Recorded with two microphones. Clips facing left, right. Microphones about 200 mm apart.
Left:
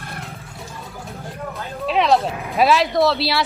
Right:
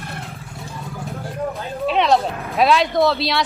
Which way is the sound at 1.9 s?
Centre (ahead or behind).